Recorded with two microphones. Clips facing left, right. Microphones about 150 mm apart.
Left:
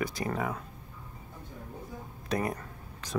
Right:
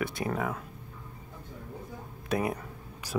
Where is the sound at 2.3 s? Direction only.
5° right (ahead or behind).